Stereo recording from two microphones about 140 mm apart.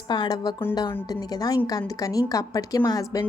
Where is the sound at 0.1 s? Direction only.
30° left (ahead or behind).